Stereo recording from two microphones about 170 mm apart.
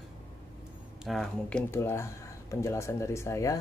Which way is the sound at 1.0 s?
Centre (ahead or behind).